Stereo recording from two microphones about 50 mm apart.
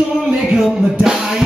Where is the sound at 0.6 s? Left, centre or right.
Centre.